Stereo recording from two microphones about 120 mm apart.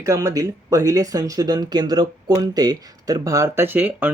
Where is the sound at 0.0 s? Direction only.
25° right (ahead or behind).